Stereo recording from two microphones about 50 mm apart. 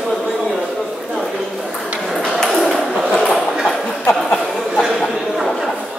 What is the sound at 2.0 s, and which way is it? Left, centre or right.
Ping, centre.